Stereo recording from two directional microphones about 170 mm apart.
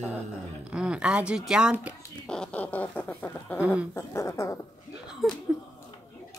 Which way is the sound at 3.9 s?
15° left (ahead or behind).